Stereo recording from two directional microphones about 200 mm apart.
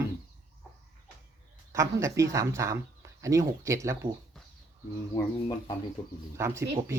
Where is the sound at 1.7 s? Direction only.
15° right (ahead or behind).